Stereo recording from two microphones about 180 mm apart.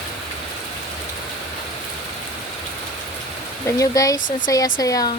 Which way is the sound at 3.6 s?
20° left (ahead or behind).